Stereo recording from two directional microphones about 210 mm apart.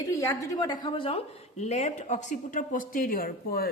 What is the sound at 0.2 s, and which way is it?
A woman's voice, 15° left (ahead or behind).